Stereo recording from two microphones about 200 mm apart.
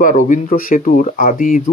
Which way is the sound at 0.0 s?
45° left (ahead or behind).